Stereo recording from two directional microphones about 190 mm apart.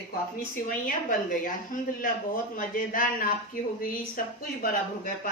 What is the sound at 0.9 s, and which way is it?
A woman's voice, 45° left (ahead or behind).